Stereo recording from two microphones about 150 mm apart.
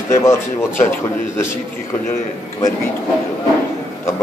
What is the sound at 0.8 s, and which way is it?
Speech, 15° left (ahead or behind).